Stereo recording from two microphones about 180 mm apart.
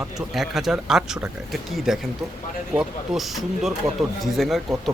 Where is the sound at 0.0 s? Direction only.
Centre (ahead or behind).